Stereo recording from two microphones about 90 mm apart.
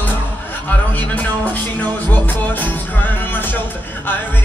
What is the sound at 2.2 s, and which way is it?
Music, 20° left (ahead or behind).